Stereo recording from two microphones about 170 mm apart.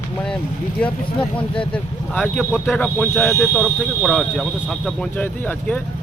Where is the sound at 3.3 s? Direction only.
15° left (ahead or behind).